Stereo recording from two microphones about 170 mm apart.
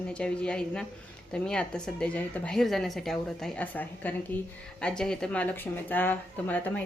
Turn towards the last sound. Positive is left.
turn(degrees=10)  # may be behind; listen again after turning